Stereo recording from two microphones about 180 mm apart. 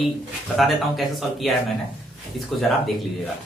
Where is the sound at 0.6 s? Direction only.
Centre (ahead or behind).